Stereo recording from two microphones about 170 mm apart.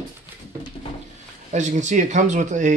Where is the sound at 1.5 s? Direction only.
45° right (ahead or behind).